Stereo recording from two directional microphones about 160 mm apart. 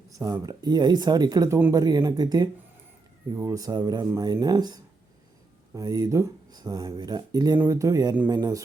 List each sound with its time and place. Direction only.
0.1 s speech: 20° right (ahead or behind)
1.8 s speech: 25° right (ahead or behind)